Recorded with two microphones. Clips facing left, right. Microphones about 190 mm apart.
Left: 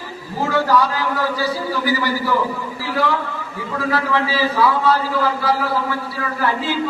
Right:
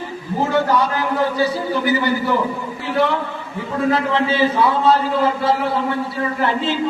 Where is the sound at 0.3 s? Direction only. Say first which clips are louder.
Even; 20° right (ahead or behind).